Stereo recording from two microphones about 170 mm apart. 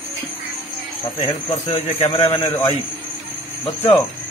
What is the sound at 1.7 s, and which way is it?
Speech, 40° left (ahead or behind).